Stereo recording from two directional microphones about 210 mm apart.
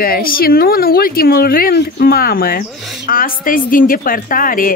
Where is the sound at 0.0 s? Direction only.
45° left (ahead or behind).